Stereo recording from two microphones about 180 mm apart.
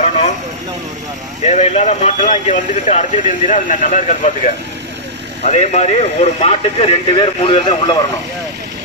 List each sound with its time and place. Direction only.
1.4 s speech: 35° left (ahead or behind)